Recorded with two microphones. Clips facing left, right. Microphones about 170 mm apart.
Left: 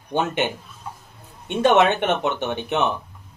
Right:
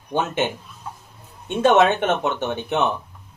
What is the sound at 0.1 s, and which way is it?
Speech, 15° left (ahead or behind).